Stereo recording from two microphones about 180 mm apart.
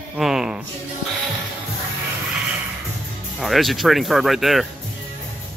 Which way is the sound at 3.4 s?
Centre (ahead or behind).